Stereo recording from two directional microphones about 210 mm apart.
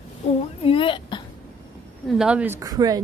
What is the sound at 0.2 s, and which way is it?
Speech, 30° left (ahead or behind).